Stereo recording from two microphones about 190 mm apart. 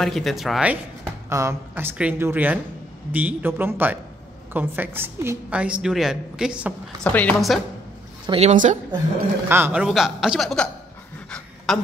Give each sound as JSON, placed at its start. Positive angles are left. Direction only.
{"t": 0.0, "sound": "a man's voice", "side_deg": 0}
{"t": 1.3, "sound": "a woman's voice", "side_deg": -15}
{"t": 7.0, "sound": "a man's voice", "side_deg": 10}
{"t": 8.3, "sound": "a woman's voice", "side_deg": -35}
{"t": 9.5, "sound": "a man's voice", "side_deg": -10}
{"t": 11.2, "sound": "pant", "side_deg": 5}